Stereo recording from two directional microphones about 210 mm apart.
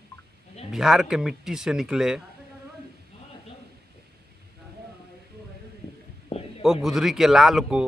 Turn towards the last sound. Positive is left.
turn(degrees=0)  # may be behind; listen again after turning